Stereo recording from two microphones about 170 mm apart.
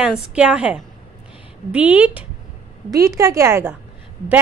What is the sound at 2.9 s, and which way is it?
Speech, 20° right (ahead or behind).